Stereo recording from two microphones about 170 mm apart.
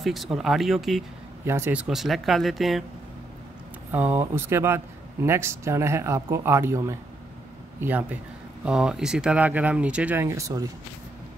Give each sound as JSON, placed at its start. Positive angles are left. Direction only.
{"t": 0.0, "sound": "speech", "side_deg": 0}
{"t": 1.4, "sound": "speech", "side_deg": -15}
{"t": 3.9, "sound": "a man's voice", "side_deg": -10}